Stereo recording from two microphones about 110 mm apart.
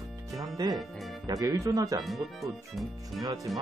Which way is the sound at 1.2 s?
35° right (ahead or behind).